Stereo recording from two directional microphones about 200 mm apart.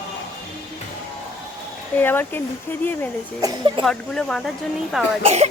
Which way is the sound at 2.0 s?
10° left (ahead or behind).